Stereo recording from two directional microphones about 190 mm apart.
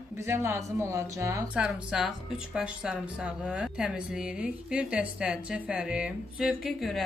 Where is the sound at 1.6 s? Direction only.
5° right (ahead or behind).